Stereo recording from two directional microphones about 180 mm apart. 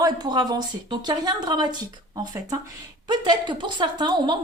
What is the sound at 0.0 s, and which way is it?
Speech, 20° right (ahead or behind).